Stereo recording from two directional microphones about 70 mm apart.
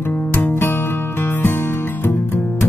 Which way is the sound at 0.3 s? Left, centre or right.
Left.